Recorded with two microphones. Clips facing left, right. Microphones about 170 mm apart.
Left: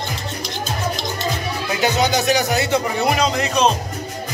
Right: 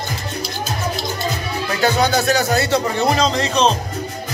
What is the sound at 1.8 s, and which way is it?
Speech, 15° left (ahead or behind).